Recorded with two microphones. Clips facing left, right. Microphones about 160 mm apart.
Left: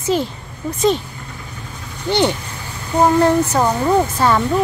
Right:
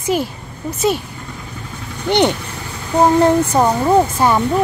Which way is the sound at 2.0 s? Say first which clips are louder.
Right 2 dB; 20° right (ahead or behind).